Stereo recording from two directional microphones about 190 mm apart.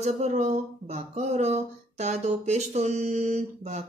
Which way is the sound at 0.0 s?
35° right (ahead or behind).